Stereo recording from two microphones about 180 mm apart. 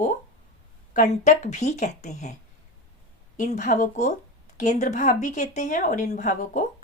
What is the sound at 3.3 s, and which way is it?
Speech, 45° left (ahead or behind).